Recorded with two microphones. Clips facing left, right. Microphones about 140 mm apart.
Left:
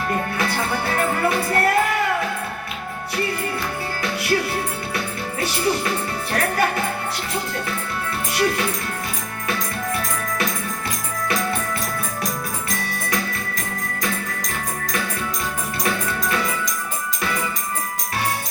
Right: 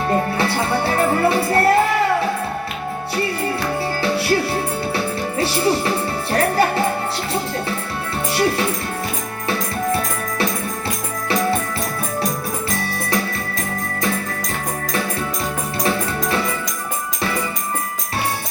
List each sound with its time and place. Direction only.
0.1 s music: 30° right (ahead or behind)
4.0 s music: 30° right (ahead or behind)
5.4 s music: 30° right (ahead or behind)
8.3 s music: 30° right (ahead or behind)